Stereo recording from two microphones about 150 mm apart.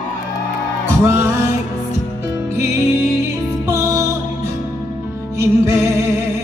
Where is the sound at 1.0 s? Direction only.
20° right (ahead or behind).